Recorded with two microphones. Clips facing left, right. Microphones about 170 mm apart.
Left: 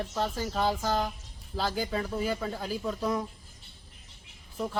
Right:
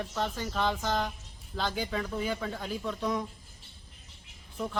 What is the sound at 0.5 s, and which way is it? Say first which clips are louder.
A woman's voice: left 2 dB; 10° left (ahead or behind).